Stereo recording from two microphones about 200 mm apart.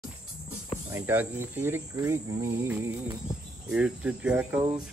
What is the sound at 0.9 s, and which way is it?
Speech, 10° right (ahead or behind).